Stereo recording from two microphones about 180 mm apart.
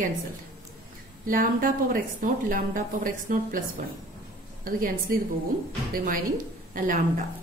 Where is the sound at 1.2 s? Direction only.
50° right (ahead or behind).